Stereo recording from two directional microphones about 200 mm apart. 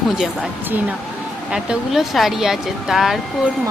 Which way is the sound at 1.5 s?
5° right (ahead or behind).